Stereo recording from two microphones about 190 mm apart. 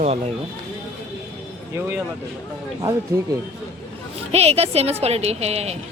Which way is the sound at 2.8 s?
20° right (ahead or behind).